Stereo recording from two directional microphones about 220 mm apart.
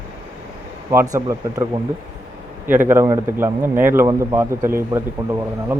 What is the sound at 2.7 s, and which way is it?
Speech, 10° right (ahead or behind).